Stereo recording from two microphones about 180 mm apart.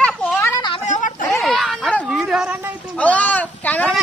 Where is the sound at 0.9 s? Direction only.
45° left (ahead or behind).